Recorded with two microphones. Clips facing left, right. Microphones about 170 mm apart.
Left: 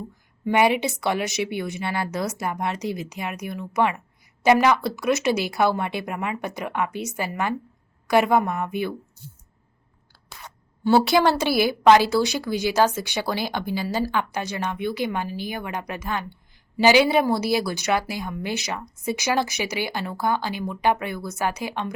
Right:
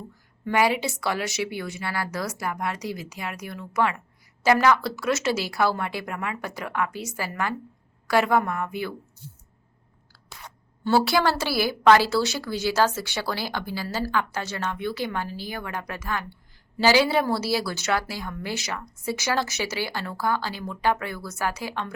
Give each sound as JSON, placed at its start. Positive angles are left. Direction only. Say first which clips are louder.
{"t": 0.4, "sound": "a woman's voice", "louder": "left 3 dB", "side_deg": 20}
{"t": 10.8, "sound": "a woman's voice", "louder": "left 3 dB", "side_deg": 20}